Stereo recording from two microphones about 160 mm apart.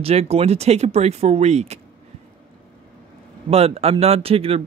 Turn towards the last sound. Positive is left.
turn(degrees=-35)  # may be behind; listen again after turning